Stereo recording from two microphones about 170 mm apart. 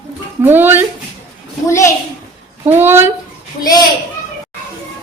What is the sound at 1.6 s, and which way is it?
Speech, 15° left (ahead or behind).